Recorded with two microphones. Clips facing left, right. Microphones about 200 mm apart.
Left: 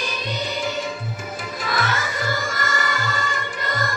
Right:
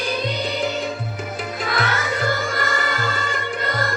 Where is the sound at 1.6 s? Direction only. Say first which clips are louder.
Right 1 dB; 60° right (ahead or behind).